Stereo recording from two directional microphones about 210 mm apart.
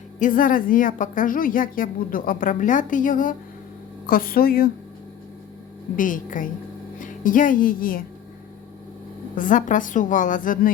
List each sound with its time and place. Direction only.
0.2 s a woman's voice: 40° left (ahead or behind)
6.0 s a woman's voice: 40° left (ahead or behind)
9.3 s a woman's voice: 40° left (ahead or behind)